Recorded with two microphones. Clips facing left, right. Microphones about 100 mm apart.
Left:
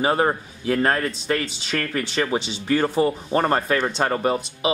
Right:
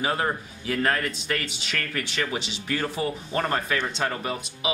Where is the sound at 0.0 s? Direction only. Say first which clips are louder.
Left 6 dB; 35° left (ahead or behind).